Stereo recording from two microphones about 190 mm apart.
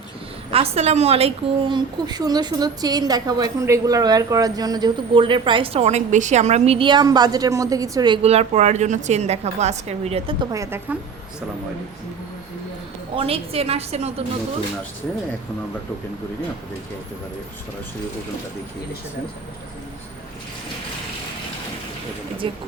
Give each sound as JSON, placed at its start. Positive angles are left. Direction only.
{"t": 0.5, "sound": "a woman's voice", "side_deg": -30}
{"t": 10.5, "sound": "a woman's voice", "side_deg": -15}
{"t": 13.1, "sound": "a woman's voice", "side_deg": -30}
{"t": 22.4, "sound": "a woman's voice", "side_deg": -25}